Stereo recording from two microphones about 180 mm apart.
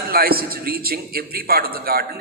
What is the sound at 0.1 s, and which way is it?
A man's voice, 55° right (ahead or behind).